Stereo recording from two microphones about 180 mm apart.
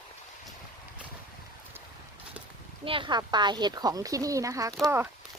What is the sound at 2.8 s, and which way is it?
Speech, 30° right (ahead or behind).